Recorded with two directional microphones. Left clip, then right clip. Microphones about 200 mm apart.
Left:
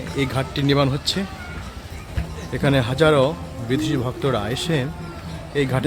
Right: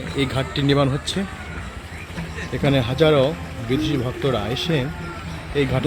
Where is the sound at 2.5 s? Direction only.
Centre (ahead or behind).